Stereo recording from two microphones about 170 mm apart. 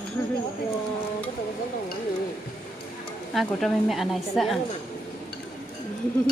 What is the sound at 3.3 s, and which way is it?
A woman's voice, centre (ahead or behind).